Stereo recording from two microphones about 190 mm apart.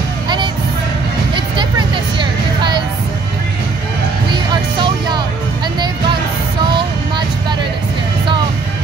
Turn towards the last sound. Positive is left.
turn(degrees=-25)  # may be behind; listen again after turning